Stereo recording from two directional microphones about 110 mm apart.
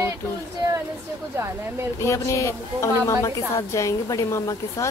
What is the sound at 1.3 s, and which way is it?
Speech, 25° right (ahead or behind).